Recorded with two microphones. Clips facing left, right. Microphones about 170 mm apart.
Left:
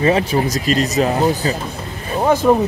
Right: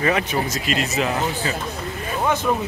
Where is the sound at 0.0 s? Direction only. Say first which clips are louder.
Left 6 dB; 30° left (ahead or behind).